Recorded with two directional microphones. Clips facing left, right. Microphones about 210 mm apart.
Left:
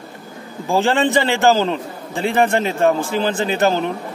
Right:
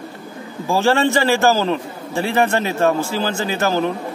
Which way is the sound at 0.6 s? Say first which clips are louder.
Even; 15° left (ahead or behind).